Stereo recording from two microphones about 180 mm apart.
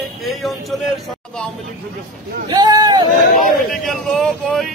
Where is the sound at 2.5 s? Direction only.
20° right (ahead or behind).